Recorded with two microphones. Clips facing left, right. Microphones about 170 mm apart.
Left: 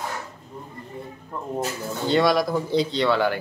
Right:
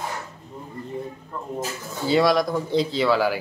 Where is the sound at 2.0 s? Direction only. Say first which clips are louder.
Right 1 dB; centre (ahead or behind).